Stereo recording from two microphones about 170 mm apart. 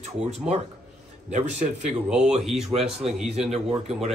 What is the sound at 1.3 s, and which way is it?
Speech, 45° right (ahead or behind).